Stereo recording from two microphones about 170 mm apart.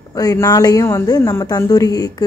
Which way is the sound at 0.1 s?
20° left (ahead or behind).